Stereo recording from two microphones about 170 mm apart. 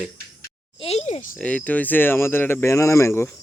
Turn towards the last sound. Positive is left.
turn(degrees=15)  # may be behind; listen again after turning